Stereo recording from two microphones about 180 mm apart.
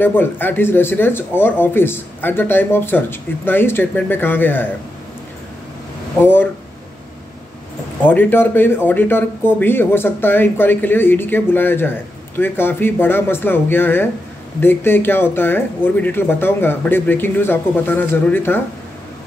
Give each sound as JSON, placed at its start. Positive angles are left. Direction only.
{"t": 0.0, "sound": "speech", "side_deg": 10}
{"t": 6.2, "sound": "speech", "side_deg": 10}
{"t": 8.0, "sound": "speech", "side_deg": 10}